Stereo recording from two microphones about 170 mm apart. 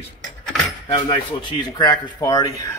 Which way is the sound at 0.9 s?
30° left (ahead or behind).